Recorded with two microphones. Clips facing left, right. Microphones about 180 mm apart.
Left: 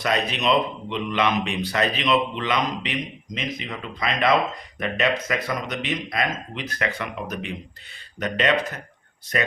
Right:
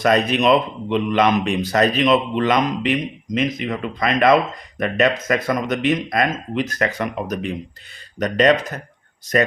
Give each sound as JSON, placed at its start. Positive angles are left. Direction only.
{"t": 0.0, "sound": "speech", "side_deg": -50}